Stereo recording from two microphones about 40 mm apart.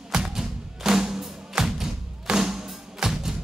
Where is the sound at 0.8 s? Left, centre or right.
Centre.